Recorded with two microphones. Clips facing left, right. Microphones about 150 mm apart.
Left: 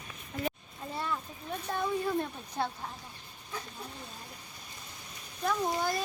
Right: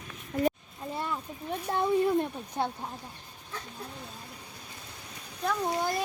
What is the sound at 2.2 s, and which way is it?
Speech, 20° right (ahead or behind).